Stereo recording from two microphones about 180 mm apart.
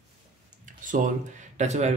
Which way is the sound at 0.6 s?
45° right (ahead or behind).